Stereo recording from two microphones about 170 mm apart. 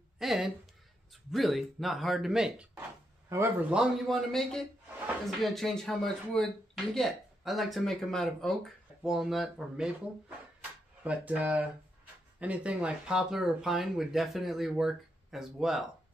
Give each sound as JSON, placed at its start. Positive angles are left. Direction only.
{"t": 0.2, "sound": "speech", "side_deg": 0}
{"t": 3.3, "sound": "speech", "side_deg": -15}
{"t": 3.7, "sound": "speech", "side_deg": -5}
{"t": 11.1, "sound": "speech", "side_deg": -10}